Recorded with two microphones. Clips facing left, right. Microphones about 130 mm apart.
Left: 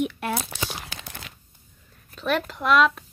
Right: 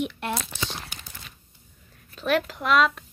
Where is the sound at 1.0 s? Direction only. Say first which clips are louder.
Left 5 dB; 75° left (ahead or behind).